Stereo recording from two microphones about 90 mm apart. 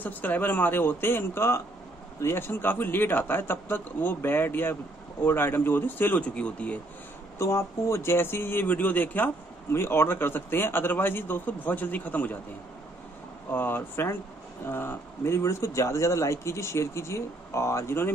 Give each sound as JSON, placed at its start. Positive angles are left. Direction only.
{"t": 0.0, "sound": "speech", "side_deg": 20}
{"t": 7.3, "sound": "speech", "side_deg": 30}
{"t": 13.5, "sound": "speech", "side_deg": 20}